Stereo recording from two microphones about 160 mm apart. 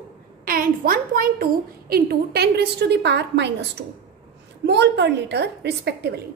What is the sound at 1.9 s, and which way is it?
A woman's voice, 75° right (ahead or behind).